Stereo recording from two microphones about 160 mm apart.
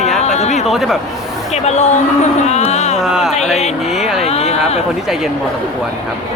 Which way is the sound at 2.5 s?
45° left (ahead or behind).